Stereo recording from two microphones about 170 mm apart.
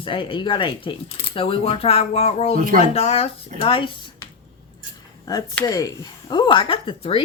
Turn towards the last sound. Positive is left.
turn(degrees=30)  # may be behind; listen again after turning